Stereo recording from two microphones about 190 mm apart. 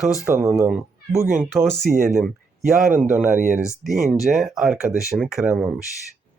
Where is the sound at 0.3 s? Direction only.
15° right (ahead or behind).